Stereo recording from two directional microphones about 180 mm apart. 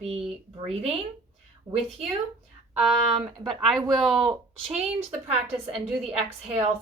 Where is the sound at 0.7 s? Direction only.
35° right (ahead or behind).